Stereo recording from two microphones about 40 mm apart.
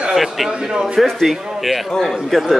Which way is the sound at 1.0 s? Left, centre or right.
Centre.